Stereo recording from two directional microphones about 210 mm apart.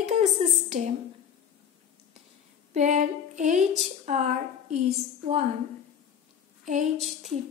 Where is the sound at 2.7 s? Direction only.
35° right (ahead or behind).